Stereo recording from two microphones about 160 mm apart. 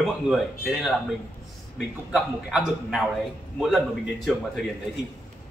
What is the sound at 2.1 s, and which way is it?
Speech, centre (ahead or behind).